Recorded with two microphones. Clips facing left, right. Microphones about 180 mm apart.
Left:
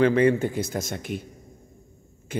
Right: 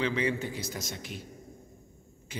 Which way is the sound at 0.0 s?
55° left (ahead or behind).